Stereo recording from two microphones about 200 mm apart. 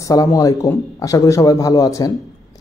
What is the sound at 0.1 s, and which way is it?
A man's voice, 20° left (ahead or behind).